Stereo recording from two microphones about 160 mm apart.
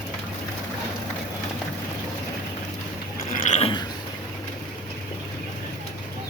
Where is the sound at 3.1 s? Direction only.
60° left (ahead or behind).